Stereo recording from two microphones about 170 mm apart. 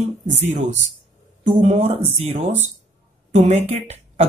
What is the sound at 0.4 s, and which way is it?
Speech, 45° right (ahead or behind).